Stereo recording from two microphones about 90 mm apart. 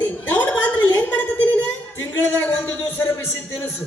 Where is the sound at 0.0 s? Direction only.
20° left (ahead or behind).